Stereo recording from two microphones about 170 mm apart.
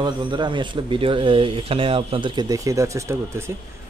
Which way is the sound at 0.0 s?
25° right (ahead or behind).